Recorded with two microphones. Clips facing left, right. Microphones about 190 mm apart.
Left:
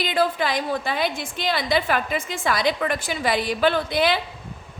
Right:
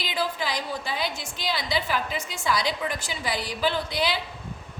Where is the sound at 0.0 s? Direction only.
55° left (ahead or behind).